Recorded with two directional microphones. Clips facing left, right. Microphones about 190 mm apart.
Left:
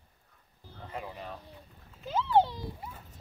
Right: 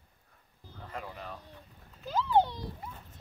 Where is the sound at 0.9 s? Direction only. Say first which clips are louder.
Left 1 dB; 10° left (ahead or behind).